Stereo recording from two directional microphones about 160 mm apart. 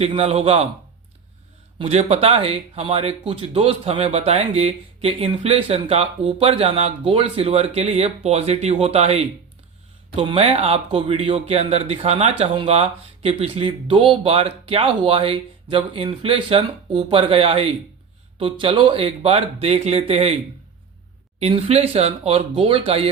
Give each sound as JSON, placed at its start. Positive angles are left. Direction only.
{"t": 0.0, "sound": "speech", "side_deg": -40}
{"t": 1.8, "sound": "speech", "side_deg": -40}
{"t": 21.3, "sound": "speech", "side_deg": -40}